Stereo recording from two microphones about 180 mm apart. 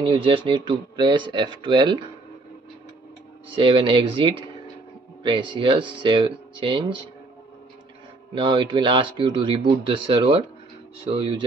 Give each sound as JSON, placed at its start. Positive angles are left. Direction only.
{"t": 0.0, "sound": "speech", "side_deg": -30}
{"t": 3.5, "sound": "speech", "side_deg": -30}
{"t": 8.4, "sound": "speech", "side_deg": -25}